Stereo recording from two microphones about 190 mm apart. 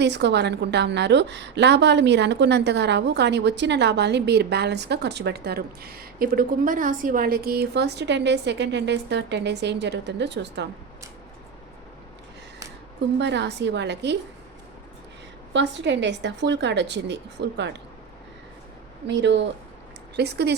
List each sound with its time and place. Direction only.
0.0 s a woman's voice: 65° right (ahead or behind)
13.1 s a woman's voice: 65° right (ahead or behind)
15.5 s a woman's voice: 65° right (ahead or behind)
19.0 s a woman's voice: 65° right (ahead or behind)